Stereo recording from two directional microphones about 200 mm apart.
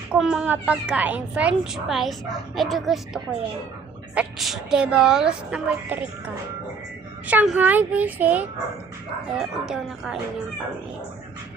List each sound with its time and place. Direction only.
0.1 s a woman's voice: 5° right (ahead or behind)